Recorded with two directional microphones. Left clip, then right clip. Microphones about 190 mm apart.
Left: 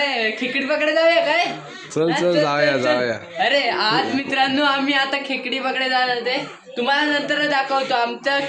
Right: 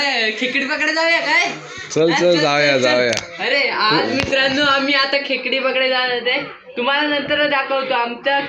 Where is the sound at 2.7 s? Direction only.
20° right (ahead or behind).